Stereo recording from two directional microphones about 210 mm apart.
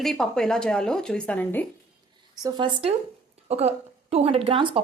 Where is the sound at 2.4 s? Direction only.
20° right (ahead or behind).